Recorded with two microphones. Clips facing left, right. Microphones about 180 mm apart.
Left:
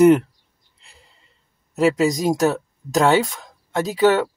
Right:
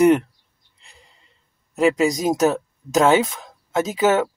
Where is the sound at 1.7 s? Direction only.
Centre (ahead or behind).